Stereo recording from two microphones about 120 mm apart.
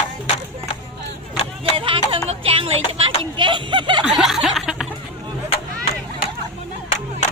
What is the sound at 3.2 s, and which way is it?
Speech, 45° right (ahead or behind).